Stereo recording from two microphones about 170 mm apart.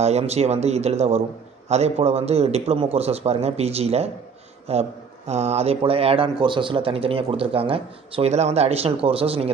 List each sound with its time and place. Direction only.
0.0 s a man's voice: 40° right (ahead or behind)